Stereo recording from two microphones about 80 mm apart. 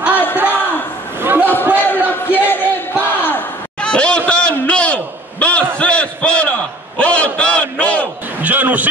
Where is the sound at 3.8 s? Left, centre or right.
Centre.